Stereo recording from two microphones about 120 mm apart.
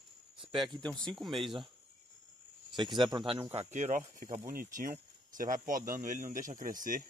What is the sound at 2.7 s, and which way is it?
Speech, 40° right (ahead or behind).